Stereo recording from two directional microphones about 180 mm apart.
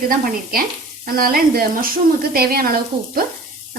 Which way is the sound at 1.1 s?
55° right (ahead or behind).